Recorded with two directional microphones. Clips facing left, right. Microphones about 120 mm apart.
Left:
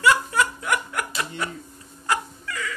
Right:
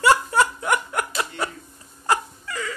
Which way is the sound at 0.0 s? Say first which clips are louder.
Right 3 dB; 35° right (ahead or behind).